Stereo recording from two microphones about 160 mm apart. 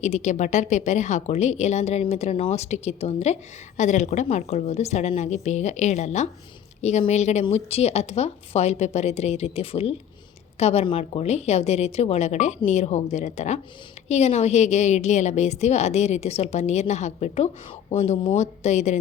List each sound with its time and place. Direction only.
0.0 s a woman's voice: 45° left (ahead or behind)